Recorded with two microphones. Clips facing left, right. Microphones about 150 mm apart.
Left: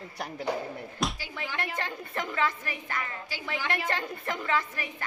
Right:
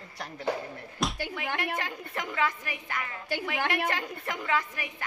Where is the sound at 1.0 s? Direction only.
Centre (ahead or behind).